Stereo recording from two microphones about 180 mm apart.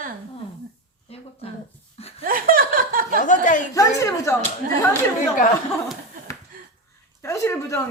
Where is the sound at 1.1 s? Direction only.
35° left (ahead or behind).